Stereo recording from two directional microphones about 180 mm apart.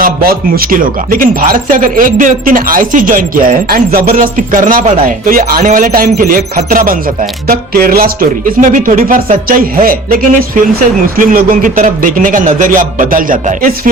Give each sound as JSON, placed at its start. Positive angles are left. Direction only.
{"t": 0.0, "sound": "speech", "side_deg": -55}